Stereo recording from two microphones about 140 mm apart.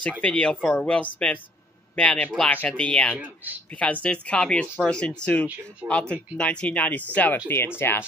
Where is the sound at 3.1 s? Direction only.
10° right (ahead or behind).